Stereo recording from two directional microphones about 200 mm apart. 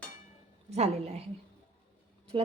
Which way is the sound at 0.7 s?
35° right (ahead or behind).